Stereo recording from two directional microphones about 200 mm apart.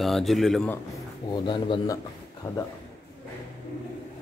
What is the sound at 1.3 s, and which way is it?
Speech, 25° left (ahead or behind).